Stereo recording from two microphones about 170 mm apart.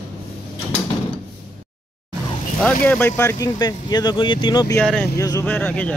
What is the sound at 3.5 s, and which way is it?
Speech, 25° left (ahead or behind).